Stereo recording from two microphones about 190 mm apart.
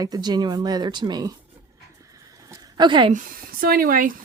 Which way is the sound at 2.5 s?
25° right (ahead or behind).